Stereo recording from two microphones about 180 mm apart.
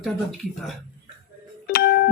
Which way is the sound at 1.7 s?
65° left (ahead or behind).